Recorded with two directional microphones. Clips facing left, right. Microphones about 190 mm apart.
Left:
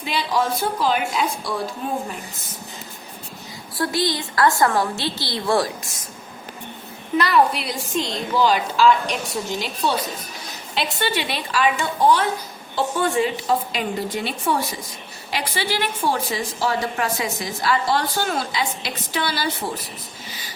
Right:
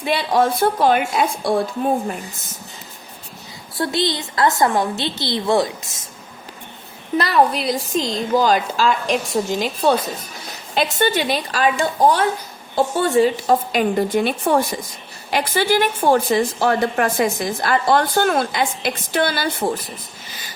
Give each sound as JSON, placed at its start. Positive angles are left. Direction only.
{"t": 0.0, "sound": "a woman's voice", "side_deg": -60}
{"t": 3.8, "sound": "a woman's voice", "side_deg": -25}
{"t": 7.2, "sound": "a woman's voice", "side_deg": -35}